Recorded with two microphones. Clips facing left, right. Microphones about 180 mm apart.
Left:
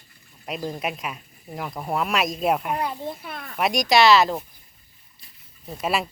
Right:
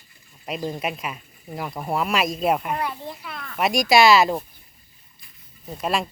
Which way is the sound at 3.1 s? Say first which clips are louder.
Left 2 dB; 50° left (ahead or behind).